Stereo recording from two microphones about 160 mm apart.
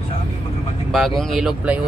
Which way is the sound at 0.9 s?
Centre (ahead or behind).